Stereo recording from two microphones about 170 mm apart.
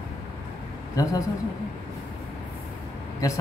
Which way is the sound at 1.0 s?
20° left (ahead or behind).